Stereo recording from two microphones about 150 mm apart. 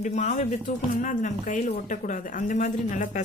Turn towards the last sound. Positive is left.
turn(degrees=55)  # may be behind; listen again after turning